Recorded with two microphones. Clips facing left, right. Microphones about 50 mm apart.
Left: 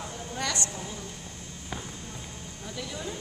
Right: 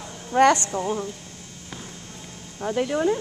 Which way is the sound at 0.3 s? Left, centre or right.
Right.